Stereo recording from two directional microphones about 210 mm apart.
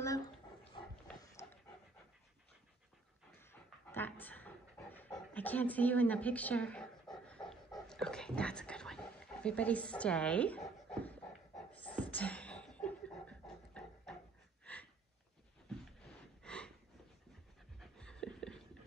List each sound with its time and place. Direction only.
0.0 s dog: 15° left (ahead or behind)
3.9 s pant: 10° left (ahead or behind)
7.8 s dog: 5° left (ahead or behind)
11.7 s beatboxing: 5° left (ahead or behind)
14.6 s a sound: 5° left (ahead or behind)
16.4 s a sound: 5° left (ahead or behind)
17.7 s pant: 5° left (ahead or behind)